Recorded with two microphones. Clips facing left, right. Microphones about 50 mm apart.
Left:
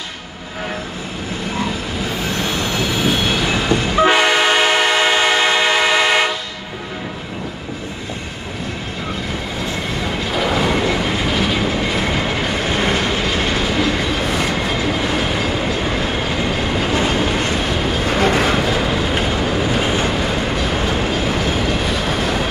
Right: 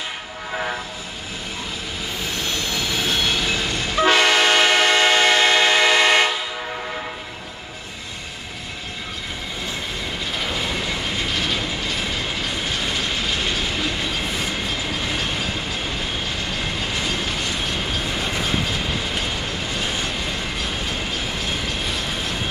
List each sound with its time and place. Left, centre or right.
3.0 s train: centre
10.7 s vehicle: left
11.3 s train: centre
12.0 s train: left
16.4 s train: left
18.0 s vehicle: left
19.7 s train: left
20.7 s train: left
21.8 s train: left